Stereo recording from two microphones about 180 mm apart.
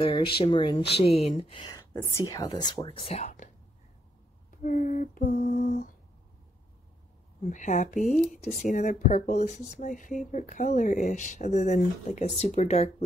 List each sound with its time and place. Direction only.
0.0 s speech: 30° left (ahead or behind)
4.6 s a sound: 45° left (ahead or behind)
7.4 s speech: 45° left (ahead or behind)
8.1 s speech: centre (ahead or behind)
8.6 s speech: 45° left (ahead or behind)